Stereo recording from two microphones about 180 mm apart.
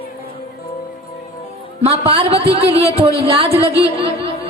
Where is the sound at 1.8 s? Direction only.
30° right (ahead or behind).